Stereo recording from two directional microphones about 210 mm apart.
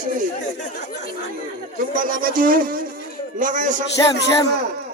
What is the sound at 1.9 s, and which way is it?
Speech, 40° right (ahead or behind).